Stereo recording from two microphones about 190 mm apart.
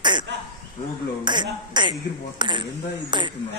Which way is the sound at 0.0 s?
25° right (ahead or behind).